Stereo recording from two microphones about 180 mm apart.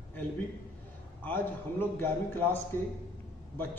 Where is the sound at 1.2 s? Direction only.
10° left (ahead or behind).